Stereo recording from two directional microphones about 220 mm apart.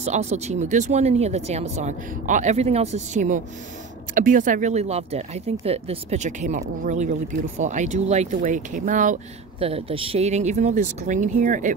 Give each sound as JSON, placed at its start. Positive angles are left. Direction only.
{"t": 0.0, "sound": "speech", "side_deg": -30}